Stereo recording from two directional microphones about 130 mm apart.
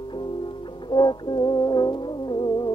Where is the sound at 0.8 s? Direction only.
35° left (ahead or behind).